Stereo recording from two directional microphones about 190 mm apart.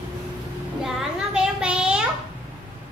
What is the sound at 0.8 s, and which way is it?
A child's voice, 5° right (ahead or behind).